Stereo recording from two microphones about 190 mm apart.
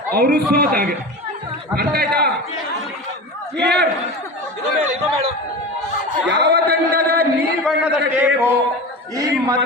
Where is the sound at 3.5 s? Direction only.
60° right (ahead or behind).